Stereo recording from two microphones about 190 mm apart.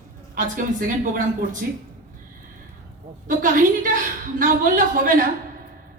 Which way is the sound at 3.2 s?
45° right (ahead or behind).